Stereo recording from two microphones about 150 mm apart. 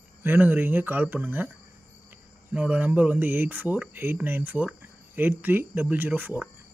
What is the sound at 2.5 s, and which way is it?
Speech, 10° right (ahead or behind).